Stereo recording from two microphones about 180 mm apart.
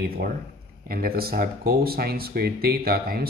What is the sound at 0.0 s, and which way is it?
A man's voice, 55° right (ahead or behind).